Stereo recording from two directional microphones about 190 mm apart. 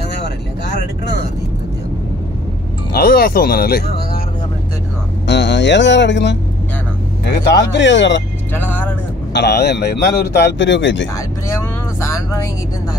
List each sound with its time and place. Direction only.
2.9 s speech: 55° left (ahead or behind)
5.2 s speech: 65° left (ahead or behind)
8.5 s vehicle: 10° left (ahead or behind)
9.3 s speech: 60° left (ahead or behind)
12.1 s vehicle: 15° left (ahead or behind)